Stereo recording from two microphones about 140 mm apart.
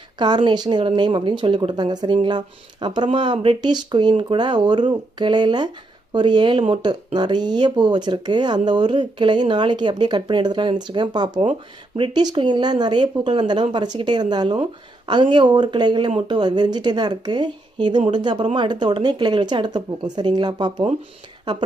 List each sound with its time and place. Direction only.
0.2 s speech: 30° right (ahead or behind)